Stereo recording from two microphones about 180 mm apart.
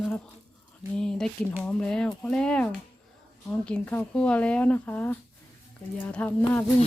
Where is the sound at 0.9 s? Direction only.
5° left (ahead or behind).